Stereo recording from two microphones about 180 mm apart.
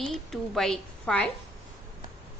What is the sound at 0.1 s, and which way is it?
A woman's voice, centre (ahead or behind).